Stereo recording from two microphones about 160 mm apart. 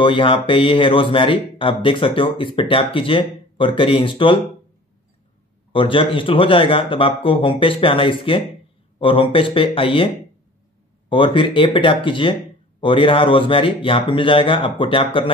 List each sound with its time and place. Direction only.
0.0 s speech: 30° left (ahead or behind)
5.7 s speech: 35° left (ahead or behind)
11.1 s speech: 30° left (ahead or behind)